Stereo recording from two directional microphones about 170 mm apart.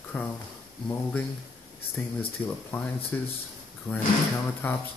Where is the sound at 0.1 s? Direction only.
10° left (ahead or behind).